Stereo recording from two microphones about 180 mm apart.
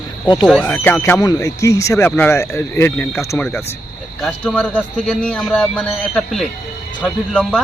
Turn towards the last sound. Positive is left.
turn(degrees=5)  # may be behind; listen again after turning